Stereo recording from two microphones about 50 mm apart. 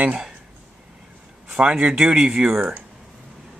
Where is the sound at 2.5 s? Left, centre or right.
Right.